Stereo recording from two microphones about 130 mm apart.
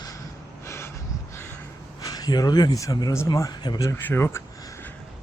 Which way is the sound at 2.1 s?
30° left (ahead or behind).